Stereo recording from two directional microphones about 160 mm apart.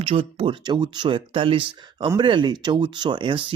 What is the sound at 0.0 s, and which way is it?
Speech, 35° right (ahead or behind).